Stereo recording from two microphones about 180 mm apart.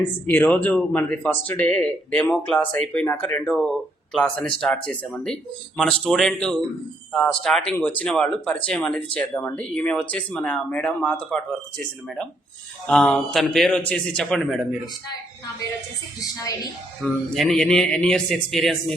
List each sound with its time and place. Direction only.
0.3 s speech: 10° left (ahead or behind)
17.0 s speech: centre (ahead or behind)